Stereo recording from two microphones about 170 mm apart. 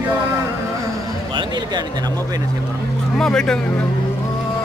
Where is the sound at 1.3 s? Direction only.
25° right (ahead or behind).